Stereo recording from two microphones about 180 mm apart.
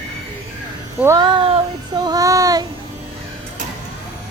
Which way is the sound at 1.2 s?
30° right (ahead or behind).